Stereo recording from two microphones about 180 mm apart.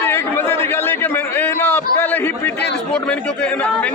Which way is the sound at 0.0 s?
10° left (ahead or behind).